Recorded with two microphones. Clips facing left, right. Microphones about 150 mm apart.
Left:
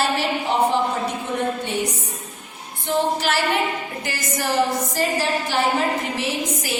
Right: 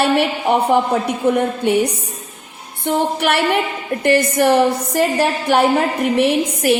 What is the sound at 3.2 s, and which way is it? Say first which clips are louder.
A woman's voice: right 5 dB; 60° right (ahead or behind).